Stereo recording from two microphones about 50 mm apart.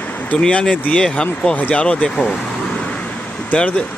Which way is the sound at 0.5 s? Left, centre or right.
Left.